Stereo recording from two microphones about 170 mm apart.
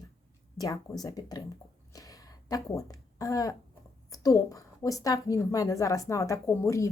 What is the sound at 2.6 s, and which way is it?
A woman's voice, 20° left (ahead or behind).